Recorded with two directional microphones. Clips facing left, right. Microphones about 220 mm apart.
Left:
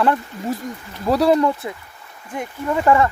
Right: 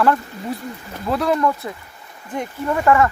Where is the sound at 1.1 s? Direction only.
35° left (ahead or behind).